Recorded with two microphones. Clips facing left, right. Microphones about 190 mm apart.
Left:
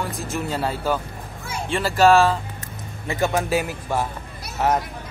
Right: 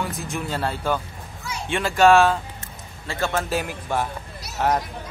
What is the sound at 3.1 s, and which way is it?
A man's voice, 15° left (ahead or behind).